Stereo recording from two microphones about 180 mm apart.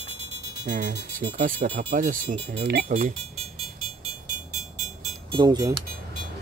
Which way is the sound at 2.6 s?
60° right (ahead or behind).